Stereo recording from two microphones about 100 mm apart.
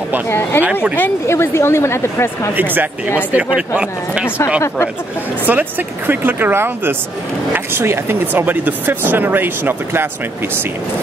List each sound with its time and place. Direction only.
0.3 s speech: 20° left (ahead or behind)
2.5 s speech: 20° right (ahead or behind)
5.5 s speech: 20° right (ahead or behind)